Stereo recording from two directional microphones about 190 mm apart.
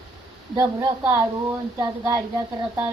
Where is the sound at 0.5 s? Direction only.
15° right (ahead or behind).